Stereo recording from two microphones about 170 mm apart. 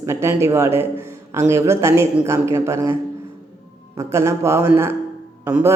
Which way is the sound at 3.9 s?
15° right (ahead or behind).